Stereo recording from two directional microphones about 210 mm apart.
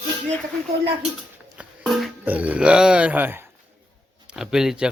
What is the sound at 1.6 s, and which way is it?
A man's voice, centre (ahead or behind).